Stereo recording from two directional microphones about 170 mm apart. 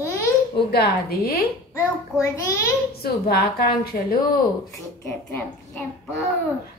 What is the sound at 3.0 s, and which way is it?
A woman's voice, 65° left (ahead or behind).